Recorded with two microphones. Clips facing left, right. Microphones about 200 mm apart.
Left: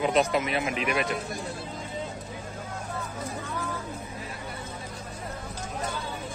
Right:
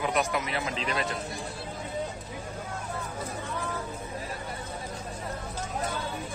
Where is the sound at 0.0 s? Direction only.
20° left (ahead or behind).